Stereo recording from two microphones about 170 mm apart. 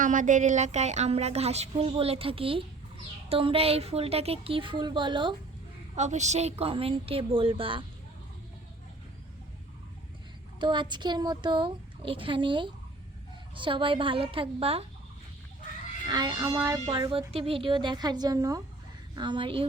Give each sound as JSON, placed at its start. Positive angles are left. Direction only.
{"t": 0.0, "sound": "a woman's voice", "side_deg": -50}
{"t": 6.0, "sound": "a woman's voice", "side_deg": -45}
{"t": 10.6, "sound": "a woman's voice", "side_deg": -25}
{"t": 16.0, "sound": "a woman's voice", "side_deg": -25}
{"t": 16.8, "sound": "a woman's voice", "side_deg": -30}